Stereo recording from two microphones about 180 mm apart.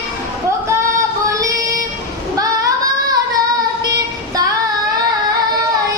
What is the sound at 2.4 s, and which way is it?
Child singing, 20° right (ahead or behind).